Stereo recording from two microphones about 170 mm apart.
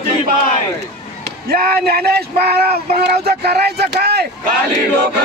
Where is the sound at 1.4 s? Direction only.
65° right (ahead or behind).